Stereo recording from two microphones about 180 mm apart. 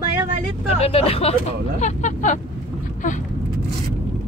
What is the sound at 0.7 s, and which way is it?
Speech, 35° left (ahead or behind).